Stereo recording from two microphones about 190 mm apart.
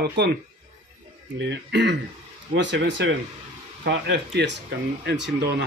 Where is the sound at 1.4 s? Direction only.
65° right (ahead or behind).